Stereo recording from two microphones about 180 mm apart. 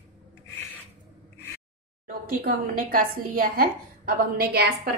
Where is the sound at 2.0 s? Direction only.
55° right (ahead or behind).